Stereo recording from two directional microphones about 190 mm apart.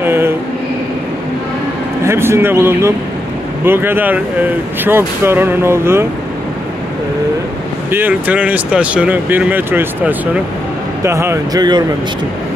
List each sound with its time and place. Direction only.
0.0 s a sound: 10° right (ahead or behind)
2.0 s speech: 15° right (ahead or behind)
7.9 s speech: 10° right (ahead or behind)